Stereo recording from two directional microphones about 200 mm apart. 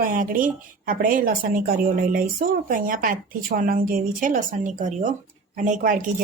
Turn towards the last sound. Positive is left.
turn(degrees=-40)  # may be behind; listen again after turning